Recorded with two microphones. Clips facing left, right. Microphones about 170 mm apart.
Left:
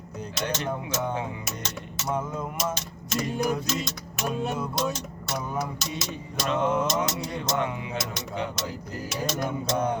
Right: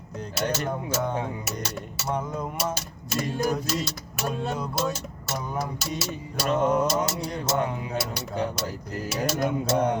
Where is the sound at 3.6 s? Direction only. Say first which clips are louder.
Right 1 dB; 10° right (ahead or behind).